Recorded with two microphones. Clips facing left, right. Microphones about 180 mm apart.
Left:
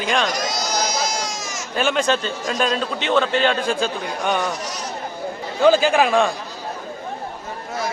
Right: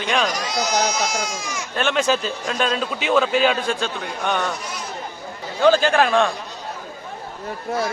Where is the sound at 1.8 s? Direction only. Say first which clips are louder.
Left 1 dB; centre (ahead or behind).